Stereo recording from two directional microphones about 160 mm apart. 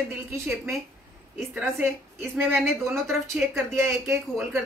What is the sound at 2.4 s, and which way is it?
A woman's voice, 10° right (ahead or behind).